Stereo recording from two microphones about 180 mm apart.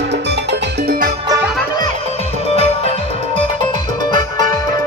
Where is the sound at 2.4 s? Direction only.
35° left (ahead or behind).